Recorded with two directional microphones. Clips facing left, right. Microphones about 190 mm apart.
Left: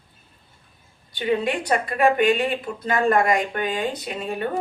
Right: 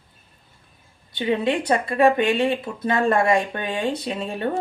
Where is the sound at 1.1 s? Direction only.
25° right (ahead or behind).